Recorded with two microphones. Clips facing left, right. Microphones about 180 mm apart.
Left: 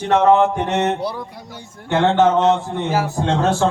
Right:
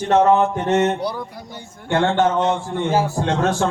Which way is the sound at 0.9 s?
Centre (ahead or behind).